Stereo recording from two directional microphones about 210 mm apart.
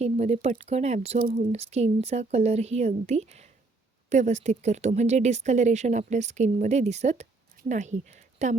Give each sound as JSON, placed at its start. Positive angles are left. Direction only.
{"t": 0.0, "sound": "speech", "side_deg": -30}
{"t": 1.2, "sound": "speech", "side_deg": -45}
{"t": 1.5, "sound": "speech", "side_deg": -30}